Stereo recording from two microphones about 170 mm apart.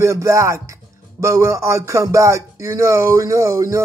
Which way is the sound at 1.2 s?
20° right (ahead or behind).